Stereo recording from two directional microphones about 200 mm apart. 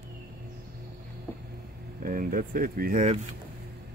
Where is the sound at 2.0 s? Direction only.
45° right (ahead or behind).